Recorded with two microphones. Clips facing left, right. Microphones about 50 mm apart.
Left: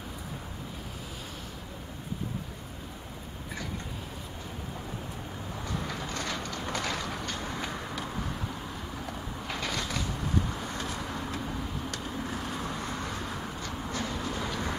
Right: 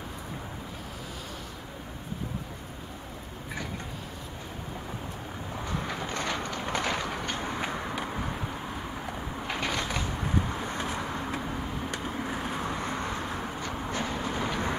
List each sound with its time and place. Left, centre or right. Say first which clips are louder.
5.6 s vehicle: right 2 dB; right